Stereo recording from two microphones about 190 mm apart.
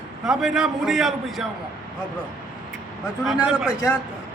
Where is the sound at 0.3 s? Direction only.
Centre (ahead or behind).